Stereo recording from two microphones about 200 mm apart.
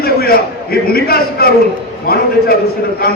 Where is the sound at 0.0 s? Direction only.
50° left (ahead or behind).